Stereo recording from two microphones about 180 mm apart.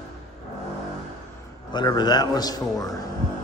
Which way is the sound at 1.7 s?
25° left (ahead or behind).